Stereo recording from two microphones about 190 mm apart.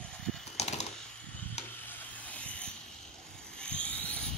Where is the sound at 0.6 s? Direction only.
35° left (ahead or behind).